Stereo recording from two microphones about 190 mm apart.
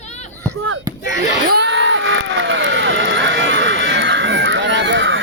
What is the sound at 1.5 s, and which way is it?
Crowd, 70° right (ahead or behind).